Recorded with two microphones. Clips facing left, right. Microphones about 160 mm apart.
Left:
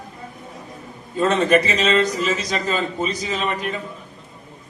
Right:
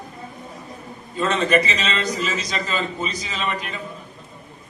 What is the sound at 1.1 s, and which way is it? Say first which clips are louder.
A man's voice: left 3 dB; 50° left (ahead or behind).